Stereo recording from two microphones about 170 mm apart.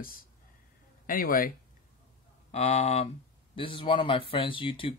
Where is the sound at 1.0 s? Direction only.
55° left (ahead or behind).